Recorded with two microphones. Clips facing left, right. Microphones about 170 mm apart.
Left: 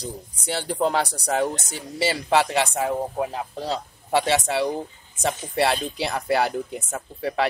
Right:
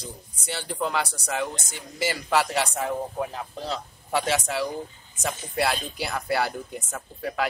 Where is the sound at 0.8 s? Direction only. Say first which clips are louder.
Left 5 dB; 35° left (ahead or behind).